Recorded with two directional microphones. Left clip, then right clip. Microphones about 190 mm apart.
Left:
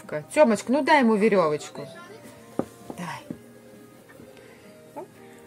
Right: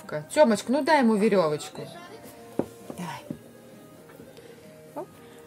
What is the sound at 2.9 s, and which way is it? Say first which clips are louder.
Whispering: left 2 dB; centre (ahead or behind).